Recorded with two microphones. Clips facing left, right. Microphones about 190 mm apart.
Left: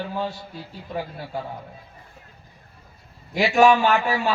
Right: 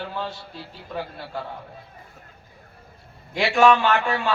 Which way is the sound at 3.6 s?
10° left (ahead or behind).